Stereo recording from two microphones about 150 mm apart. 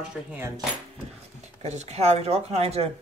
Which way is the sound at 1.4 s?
50° right (ahead or behind).